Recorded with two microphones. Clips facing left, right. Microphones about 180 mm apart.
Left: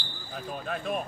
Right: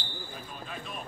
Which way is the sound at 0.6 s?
55° left (ahead or behind).